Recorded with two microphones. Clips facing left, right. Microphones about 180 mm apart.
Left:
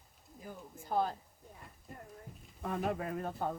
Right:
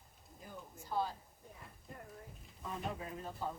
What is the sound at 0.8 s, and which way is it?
Speech, 55° left (ahead or behind).